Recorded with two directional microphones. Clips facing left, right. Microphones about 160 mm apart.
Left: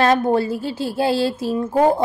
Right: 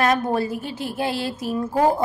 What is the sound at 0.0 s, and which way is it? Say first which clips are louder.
A woman's voice: left 4 dB; 30° left (ahead or behind).